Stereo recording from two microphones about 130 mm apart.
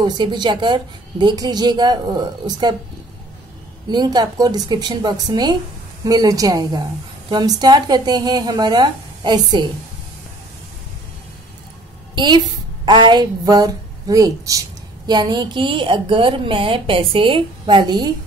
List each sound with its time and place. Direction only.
0.0 s a woman's voice: 35° right (ahead or behind)
3.9 s a woman's voice: 35° right (ahead or behind)
12.2 s a woman's voice: 35° right (ahead or behind)